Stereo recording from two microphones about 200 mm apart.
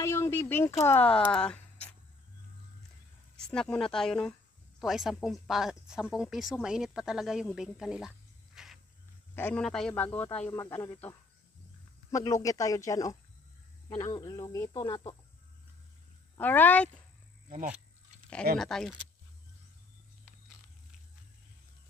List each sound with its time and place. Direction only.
0.0 s speech: 15° left (ahead or behind)
3.3 s speech: 5° left (ahead or behind)
8.6 s wild animals: centre (ahead or behind)
9.3 s a man's voice: 5° left (ahead or behind); by 15.1 s 25° left (ahead or behind)
16.3 s a man's voice: 10° left (ahead or behind)
17.5 s speech: 40° right (ahead or behind)
18.6 s speech: 5° left (ahead or behind)